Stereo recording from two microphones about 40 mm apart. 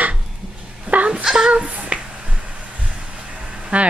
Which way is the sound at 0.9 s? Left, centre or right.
Right.